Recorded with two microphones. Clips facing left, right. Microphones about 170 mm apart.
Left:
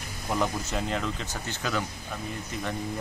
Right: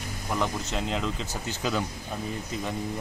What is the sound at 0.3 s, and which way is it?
Speech, 5° left (ahead or behind).